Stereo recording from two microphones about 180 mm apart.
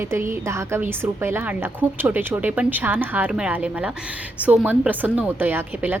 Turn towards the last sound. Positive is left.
turn(degrees=-10)  # may be behind; listen again after turning